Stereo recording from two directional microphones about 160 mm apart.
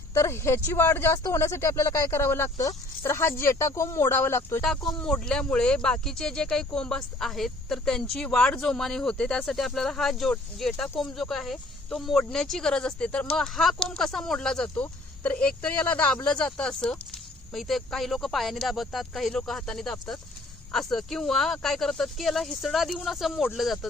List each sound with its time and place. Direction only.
0.1 s speech: 15° left (ahead or behind)
4.6 s speech: 5° left (ahead or behind)